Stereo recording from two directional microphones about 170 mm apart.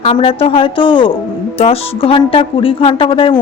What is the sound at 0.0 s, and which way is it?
Speech, 35° left (ahead or behind).